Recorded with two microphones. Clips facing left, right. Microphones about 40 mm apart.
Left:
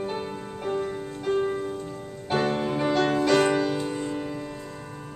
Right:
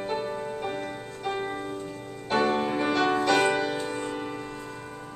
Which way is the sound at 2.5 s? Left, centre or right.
Centre.